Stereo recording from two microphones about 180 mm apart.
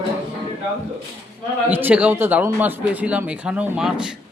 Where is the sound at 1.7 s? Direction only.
10° right (ahead or behind).